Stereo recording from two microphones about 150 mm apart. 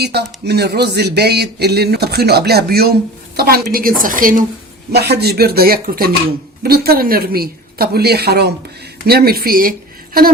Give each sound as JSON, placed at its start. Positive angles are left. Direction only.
{"t": 0.0, "sound": "a woman's voice", "side_deg": -90}
{"t": 4.9, "sound": "speech", "side_deg": -90}
{"t": 6.6, "sound": "speech", "side_deg": -90}